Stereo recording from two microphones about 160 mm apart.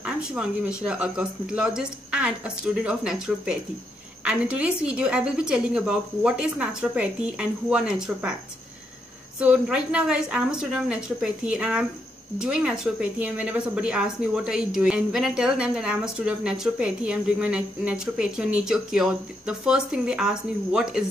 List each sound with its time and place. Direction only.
0.0 s a woman's voice: 5° right (ahead or behind)
9.4 s a woman's voice: 5° right (ahead or behind)